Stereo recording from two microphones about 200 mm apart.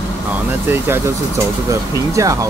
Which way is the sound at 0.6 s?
10° right (ahead or behind).